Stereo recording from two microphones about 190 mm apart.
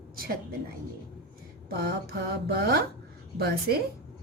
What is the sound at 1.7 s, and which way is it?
A woman's voice, 55° right (ahead or behind).